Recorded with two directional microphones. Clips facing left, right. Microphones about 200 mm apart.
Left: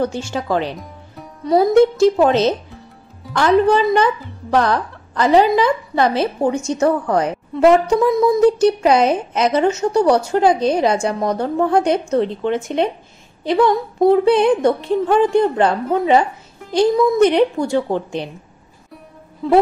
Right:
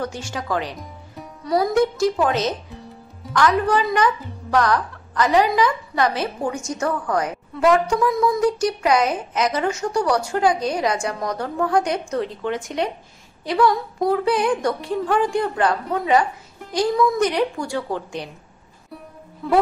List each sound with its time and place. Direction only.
0.0 s a woman's voice: 25° left (ahead or behind)